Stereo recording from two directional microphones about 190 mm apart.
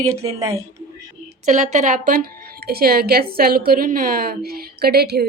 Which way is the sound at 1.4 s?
40° right (ahead or behind).